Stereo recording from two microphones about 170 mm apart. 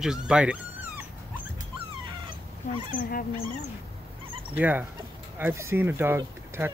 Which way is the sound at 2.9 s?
55° left (ahead or behind).